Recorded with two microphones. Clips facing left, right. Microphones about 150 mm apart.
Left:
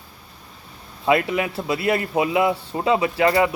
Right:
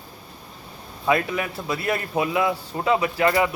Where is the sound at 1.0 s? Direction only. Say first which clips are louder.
Left 3 dB; 20° left (ahead or behind).